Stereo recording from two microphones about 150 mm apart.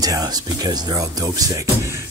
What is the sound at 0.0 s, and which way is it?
Speech, 25° right (ahead or behind).